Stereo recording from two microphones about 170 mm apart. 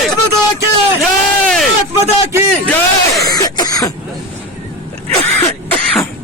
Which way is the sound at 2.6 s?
10° left (ahead or behind).